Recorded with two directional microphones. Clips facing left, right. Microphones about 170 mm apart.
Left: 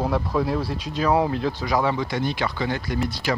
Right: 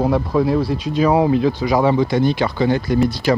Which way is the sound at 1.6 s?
25° right (ahead or behind).